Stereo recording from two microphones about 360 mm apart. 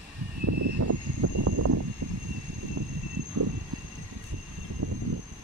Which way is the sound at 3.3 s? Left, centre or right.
Right.